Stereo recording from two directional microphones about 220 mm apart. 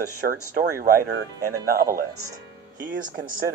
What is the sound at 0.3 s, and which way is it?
Speech, 40° right (ahead or behind).